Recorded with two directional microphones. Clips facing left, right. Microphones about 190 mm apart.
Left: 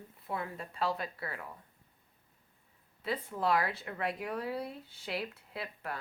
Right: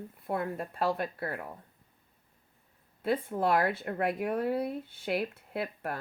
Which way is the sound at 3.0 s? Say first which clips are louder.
Right 4 dB; 55° right (ahead or behind).